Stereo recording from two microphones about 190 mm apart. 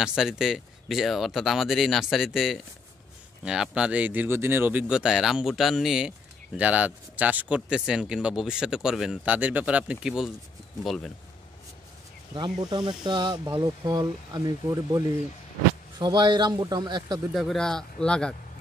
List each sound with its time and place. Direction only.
0.0 s speech: 5° right (ahead or behind)
12.4 s speech: 20° right (ahead or behind)
17.3 s speech: centre (ahead or behind)